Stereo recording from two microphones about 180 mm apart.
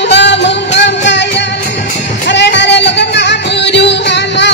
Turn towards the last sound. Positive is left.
turn(degrees=75)  # may be behind; listen again after turning